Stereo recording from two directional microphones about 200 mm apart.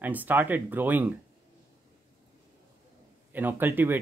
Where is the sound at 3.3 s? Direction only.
10° right (ahead or behind).